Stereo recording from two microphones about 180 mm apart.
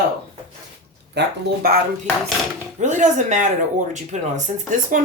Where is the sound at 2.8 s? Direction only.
45° right (ahead or behind).